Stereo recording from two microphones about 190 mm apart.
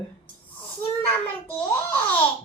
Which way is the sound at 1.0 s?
10° left (ahead or behind).